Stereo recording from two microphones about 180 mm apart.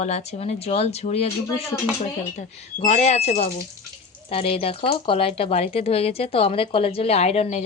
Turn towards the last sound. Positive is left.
turn(degrees=35)  # may be behind; listen again after turning